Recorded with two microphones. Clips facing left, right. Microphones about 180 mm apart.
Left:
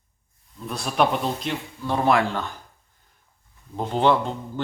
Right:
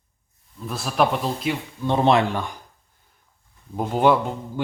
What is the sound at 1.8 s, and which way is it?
Speech, 25° right (ahead or behind).